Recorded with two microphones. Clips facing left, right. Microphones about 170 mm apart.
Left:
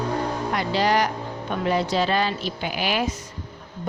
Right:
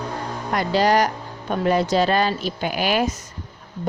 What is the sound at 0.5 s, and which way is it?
A woman's voice, 45° right (ahead or behind).